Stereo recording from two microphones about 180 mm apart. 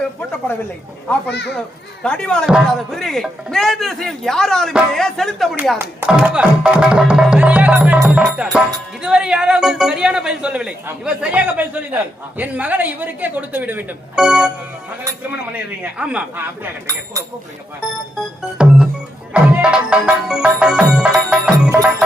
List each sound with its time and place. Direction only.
1.3 s a child's voice: 70° left (ahead or behind)
2.0 s a man's voice: 5° left (ahead or behind)
18.5 s music: 5° right (ahead or behind)